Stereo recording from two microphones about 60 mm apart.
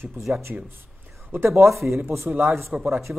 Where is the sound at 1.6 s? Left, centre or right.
Right.